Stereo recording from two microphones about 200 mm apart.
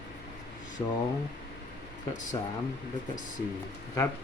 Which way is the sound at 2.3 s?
20° left (ahead or behind).